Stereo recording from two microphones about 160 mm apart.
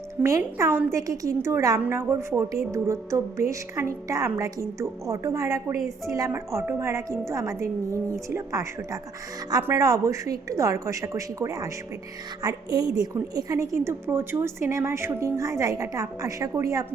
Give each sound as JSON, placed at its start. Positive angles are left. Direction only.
{"t": 0.2, "sound": "a woman's voice", "side_deg": -20}